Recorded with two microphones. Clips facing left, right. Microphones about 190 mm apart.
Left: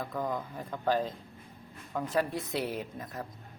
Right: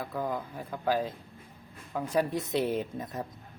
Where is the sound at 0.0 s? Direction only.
5° right (ahead or behind).